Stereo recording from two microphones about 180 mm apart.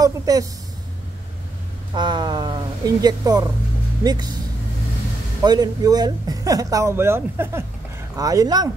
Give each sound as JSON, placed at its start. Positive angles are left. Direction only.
{"t": 0.0, "sound": "speech", "side_deg": -20}
{"t": 2.0, "sound": "speech", "side_deg": -25}
{"t": 5.4, "sound": "speech", "side_deg": -20}